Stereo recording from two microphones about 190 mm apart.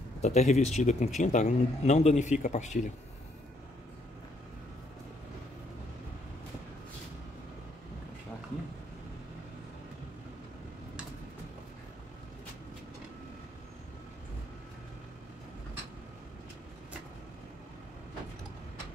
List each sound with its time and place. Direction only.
0.2 s a man's voice: 35° left (ahead or behind)